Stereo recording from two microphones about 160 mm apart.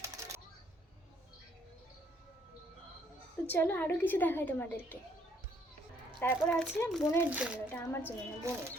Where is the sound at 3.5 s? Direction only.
15° left (ahead or behind).